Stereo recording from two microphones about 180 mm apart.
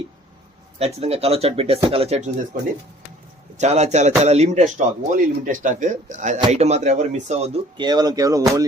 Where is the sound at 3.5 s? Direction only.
40° right (ahead or behind); by 8.7 s 20° right (ahead or behind).